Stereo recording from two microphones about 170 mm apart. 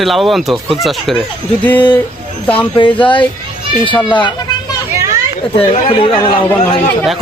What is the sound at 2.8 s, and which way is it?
Speech, 30° left (ahead or behind).